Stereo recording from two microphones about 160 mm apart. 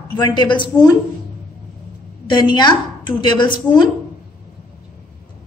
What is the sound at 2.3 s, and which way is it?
A woman's voice, 30° left (ahead or behind).